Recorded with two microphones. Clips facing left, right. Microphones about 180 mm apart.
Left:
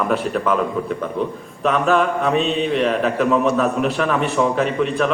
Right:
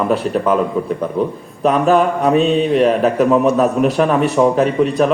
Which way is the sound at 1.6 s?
40° right (ahead or behind).